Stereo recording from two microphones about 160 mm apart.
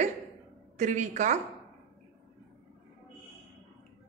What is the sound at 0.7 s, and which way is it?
Speech, 50° right (ahead or behind).